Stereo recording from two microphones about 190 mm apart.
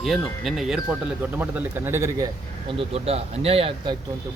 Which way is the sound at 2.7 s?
30° right (ahead or behind).